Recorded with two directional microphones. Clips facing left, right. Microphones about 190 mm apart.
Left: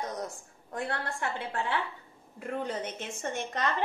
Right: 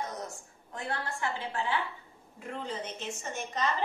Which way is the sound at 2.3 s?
55° left (ahead or behind).